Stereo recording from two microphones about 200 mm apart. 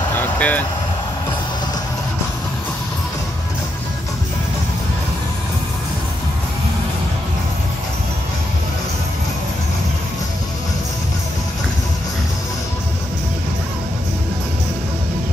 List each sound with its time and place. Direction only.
0.1 s vehicle: 10° left (ahead or behind)